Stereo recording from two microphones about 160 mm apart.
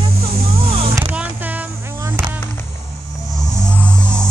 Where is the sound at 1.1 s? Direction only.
10° right (ahead or behind).